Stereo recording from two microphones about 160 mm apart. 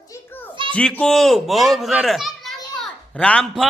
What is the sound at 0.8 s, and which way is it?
A man's voice, 5° left (ahead or behind).